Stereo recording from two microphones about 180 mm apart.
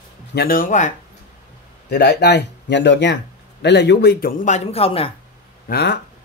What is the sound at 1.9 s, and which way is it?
Speech, 65° left (ahead or behind).